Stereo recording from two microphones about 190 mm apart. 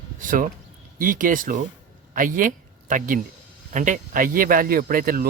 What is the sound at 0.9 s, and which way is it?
Speech, 45° right (ahead or behind).